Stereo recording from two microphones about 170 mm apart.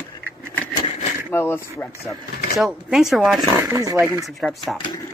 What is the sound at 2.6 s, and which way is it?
Speech, centre (ahead or behind).